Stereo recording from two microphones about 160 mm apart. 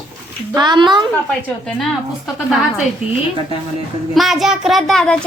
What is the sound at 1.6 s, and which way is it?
A child's voice, centre (ahead or behind).